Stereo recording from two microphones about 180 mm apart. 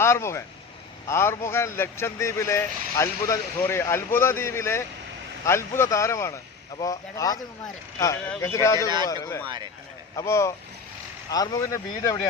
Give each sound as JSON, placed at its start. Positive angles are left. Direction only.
{"t": 0.0, "sound": "speech", "side_deg": 15}